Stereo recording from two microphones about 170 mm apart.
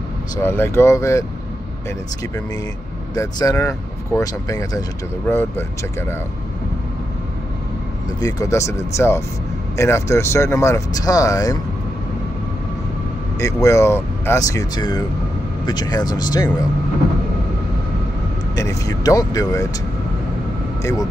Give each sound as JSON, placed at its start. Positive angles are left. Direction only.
{"t": 0.4, "sound": "speech", "side_deg": 15}
{"t": 3.2, "sound": "speech", "side_deg": 20}
{"t": 8.2, "sound": "speech", "side_deg": 20}
{"t": 13.4, "sound": "speech", "side_deg": 20}
{"t": 18.6, "sound": "speech", "side_deg": 20}